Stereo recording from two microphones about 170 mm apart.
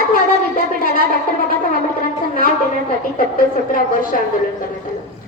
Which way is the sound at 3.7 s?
55° left (ahead or behind).